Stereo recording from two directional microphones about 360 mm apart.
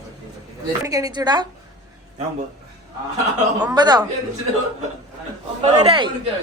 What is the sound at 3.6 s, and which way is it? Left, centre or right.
Speech, centre.